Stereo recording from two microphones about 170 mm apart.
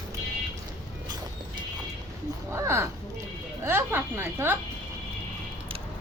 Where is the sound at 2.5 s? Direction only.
15° right (ahead or behind).